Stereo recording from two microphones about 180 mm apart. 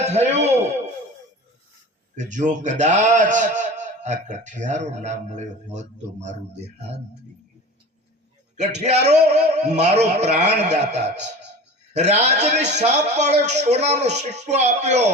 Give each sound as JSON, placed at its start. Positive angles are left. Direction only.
{"t": 0.0, "sound": "a man's voice", "side_deg": -35}
{"t": 2.1, "sound": "a man's voice", "side_deg": -45}
{"t": 8.5, "sound": "a man's voice", "side_deg": -40}